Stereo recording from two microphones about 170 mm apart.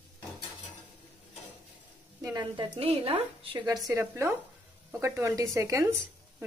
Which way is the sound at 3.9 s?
15° right (ahead or behind).